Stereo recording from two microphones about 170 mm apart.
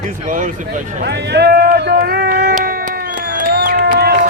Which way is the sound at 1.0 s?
80° right.